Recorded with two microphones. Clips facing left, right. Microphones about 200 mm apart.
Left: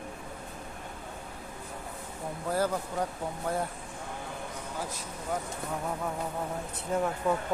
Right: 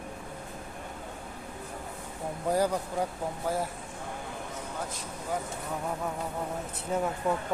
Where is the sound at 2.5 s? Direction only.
15° right (ahead or behind).